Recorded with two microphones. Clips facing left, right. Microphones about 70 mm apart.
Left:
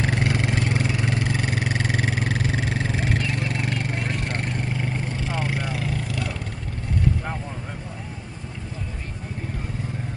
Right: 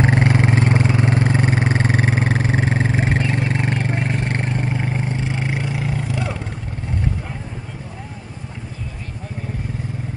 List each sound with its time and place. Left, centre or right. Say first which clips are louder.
0.0 s vehicle: right 7 dB; right